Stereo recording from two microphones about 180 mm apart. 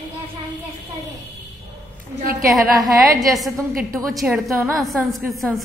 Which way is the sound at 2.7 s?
20° right (ahead or behind).